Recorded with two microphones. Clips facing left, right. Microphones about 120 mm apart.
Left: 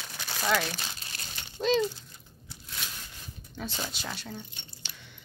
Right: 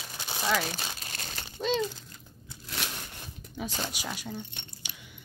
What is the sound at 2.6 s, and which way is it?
Crushing, 75° right (ahead or behind).